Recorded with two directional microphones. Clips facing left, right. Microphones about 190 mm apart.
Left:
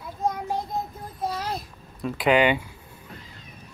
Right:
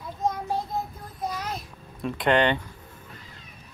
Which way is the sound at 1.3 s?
30° left (ahead or behind).